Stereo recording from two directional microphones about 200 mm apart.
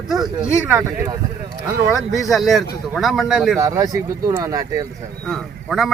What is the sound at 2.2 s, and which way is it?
Speech, centre (ahead or behind).